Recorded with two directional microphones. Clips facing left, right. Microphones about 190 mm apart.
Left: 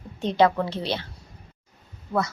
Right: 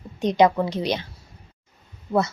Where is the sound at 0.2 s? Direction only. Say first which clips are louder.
Right 2 dB; 15° right (ahead or behind).